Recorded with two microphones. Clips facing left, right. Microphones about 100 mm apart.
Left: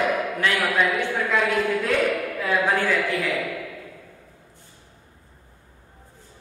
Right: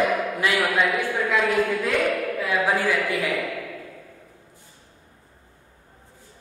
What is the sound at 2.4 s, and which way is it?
Speech, 5° right (ahead or behind).